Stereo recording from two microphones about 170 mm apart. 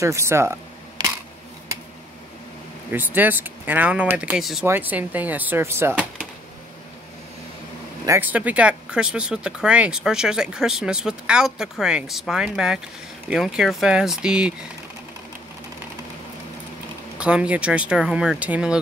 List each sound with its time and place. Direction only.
0.0 s speech: 15° right (ahead or behind)
2.9 s speech: 10° right (ahead or behind)
8.0 s speech: 15° right (ahead or behind)
17.2 s speech: 5° right (ahead or behind)